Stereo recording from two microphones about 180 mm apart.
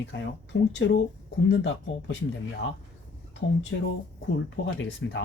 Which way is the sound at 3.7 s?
90° left.